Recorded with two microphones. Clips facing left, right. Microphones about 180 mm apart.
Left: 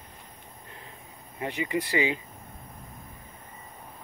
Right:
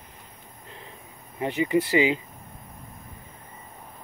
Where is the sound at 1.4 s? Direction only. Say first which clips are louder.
Right 6 dB; 25° right (ahead or behind).